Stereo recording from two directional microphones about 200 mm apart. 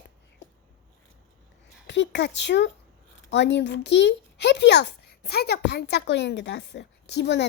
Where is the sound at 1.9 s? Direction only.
60° left (ahead or behind).